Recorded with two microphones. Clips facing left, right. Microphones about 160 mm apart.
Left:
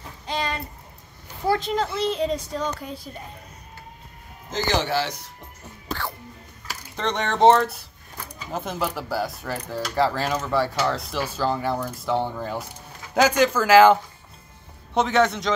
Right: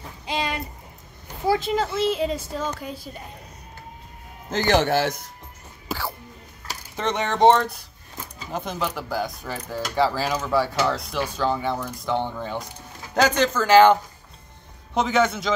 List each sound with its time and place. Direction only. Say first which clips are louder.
0.3 s a sound: right 1 dB; 10° right (ahead or behind)
1.5 s speech: right 1 dB; 5° right (ahead or behind)
4.5 s speech: right 4 dB; 55° right (ahead or behind)
5.9 s music: right 1 dB; 5° right (ahead or behind)
7.0 s speech: even; 5° right (ahead or behind)
15.0 s speech: left 1 dB; centre (ahead or behind)